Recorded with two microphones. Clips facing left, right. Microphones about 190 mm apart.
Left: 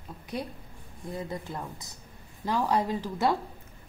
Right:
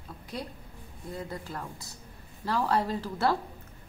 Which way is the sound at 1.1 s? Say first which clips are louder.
Left 2 dB; 20° left (ahead or behind).